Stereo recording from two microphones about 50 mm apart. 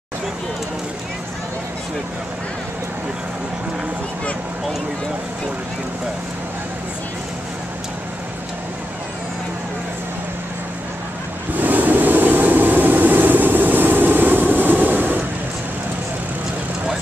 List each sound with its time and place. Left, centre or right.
11.5 s vehicle: right